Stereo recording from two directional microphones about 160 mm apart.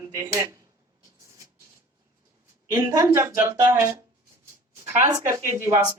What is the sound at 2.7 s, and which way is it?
Speech, 20° right (ahead or behind).